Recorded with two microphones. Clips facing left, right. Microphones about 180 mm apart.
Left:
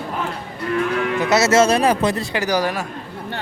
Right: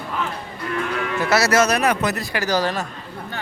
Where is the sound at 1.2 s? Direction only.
20° left (ahead or behind).